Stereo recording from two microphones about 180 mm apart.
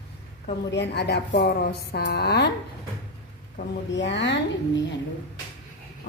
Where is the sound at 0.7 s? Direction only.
70° left (ahead or behind).